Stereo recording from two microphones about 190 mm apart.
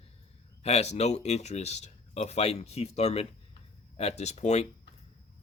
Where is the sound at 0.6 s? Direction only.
35° left (ahead or behind).